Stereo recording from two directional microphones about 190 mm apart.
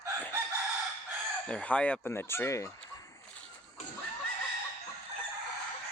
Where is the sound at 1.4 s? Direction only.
5° left (ahead or behind).